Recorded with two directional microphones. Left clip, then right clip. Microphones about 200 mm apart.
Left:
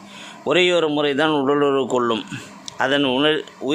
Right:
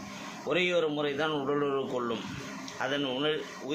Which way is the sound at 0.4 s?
60° left (ahead or behind).